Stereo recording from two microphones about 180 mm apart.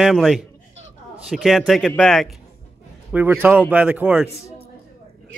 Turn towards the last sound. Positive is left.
turn(degrees=-5)  # may be behind; listen again after turning